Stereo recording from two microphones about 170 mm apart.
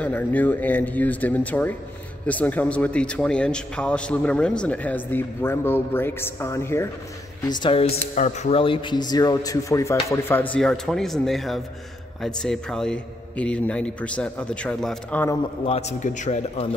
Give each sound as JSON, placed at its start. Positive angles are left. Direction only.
{"t": 0.0, "sound": "speech", "side_deg": 10}
{"t": 7.4, "sound": "speech", "side_deg": 25}
{"t": 8.1, "sound": "speech", "side_deg": 45}
{"t": 10.5, "sound": "speech", "side_deg": 5}
{"t": 15.6, "sound": "a man's voice", "side_deg": 40}